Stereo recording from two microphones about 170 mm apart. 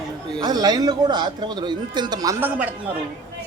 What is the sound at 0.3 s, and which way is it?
A man's voice, 25° right (ahead or behind).